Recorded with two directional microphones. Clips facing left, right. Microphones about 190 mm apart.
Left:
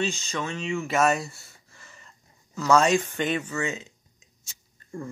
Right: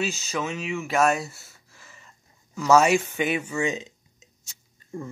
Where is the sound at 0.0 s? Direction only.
5° right (ahead or behind).